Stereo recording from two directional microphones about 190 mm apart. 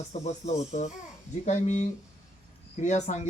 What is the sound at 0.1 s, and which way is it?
A man's voice, 35° left (ahead or behind).